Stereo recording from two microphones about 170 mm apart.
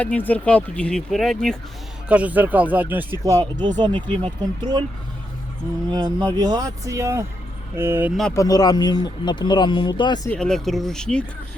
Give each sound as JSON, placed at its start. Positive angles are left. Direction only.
{"t": 0.0, "sound": "speech", "side_deg": 10}
{"t": 2.0, "sound": "speech", "side_deg": -10}
{"t": 5.9, "sound": "speech", "side_deg": -25}
{"t": 8.3, "sound": "speech", "side_deg": 20}
{"t": 10.2, "sound": "speech", "side_deg": 5}